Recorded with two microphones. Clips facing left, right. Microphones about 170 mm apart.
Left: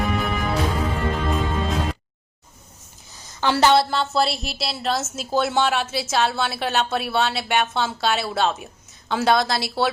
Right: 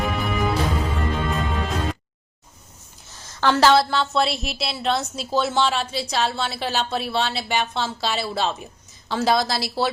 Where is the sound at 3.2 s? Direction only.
15° left (ahead or behind).